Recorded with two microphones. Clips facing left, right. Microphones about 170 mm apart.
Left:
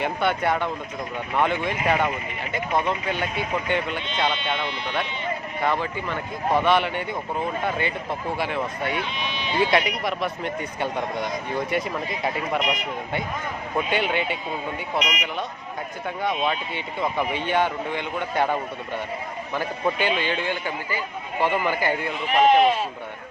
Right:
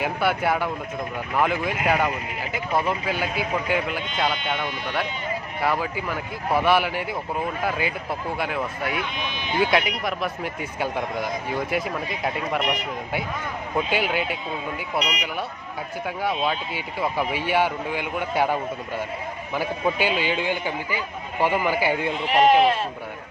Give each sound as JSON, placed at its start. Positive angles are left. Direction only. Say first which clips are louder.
{"t": 0.0, "sound": "speech", "louder": "even", "side_deg": -5}
{"t": 5.6, "sound": "speech", "louder": "even", "side_deg": -5}
{"t": 9.0, "sound": "speech", "louder": "even", "side_deg": -50}
{"t": 9.6, "sound": "speech", "louder": "left 1 dB", "side_deg": 0}
{"t": 13.7, "sound": "speech", "louder": "even", "side_deg": 0}
{"t": 14.9, "sound": "speech", "louder": "even", "side_deg": -35}
{"t": 16.4, "sound": "speech", "louder": "even", "side_deg": -5}